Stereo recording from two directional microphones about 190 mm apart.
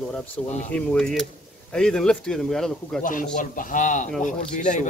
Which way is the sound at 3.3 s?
45° left (ahead or behind).